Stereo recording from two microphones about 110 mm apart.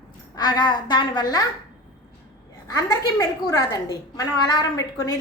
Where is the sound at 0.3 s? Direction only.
40° left (ahead or behind).